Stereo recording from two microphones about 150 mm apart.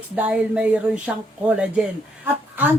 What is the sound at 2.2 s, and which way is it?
Speech, 10° right (ahead or behind).